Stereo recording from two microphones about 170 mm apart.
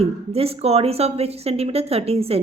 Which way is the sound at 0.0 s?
35° right (ahead or behind).